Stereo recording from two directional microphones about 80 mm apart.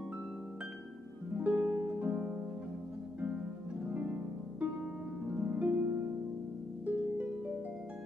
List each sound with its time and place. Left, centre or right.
1.3 s music: centre
3.8 s harp: centre